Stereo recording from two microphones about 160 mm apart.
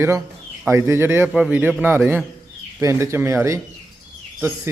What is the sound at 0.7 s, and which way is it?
Speech, 15° right (ahead or behind).